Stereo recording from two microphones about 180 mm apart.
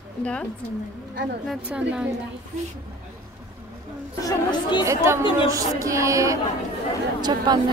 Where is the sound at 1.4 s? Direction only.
5° right (ahead or behind).